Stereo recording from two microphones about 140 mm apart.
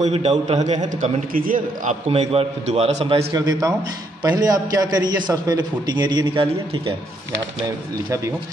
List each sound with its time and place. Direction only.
0.0 s a man's voice: 50° right (ahead or behind); by 2.0 s 70° right (ahead or behind)
2.0 s a man's voice: 50° right (ahead or behind)
3.3 s a man's voice: 25° right (ahead or behind)